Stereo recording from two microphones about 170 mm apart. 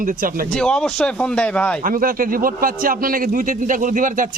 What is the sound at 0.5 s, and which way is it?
Speech, 5° left (ahead or behind).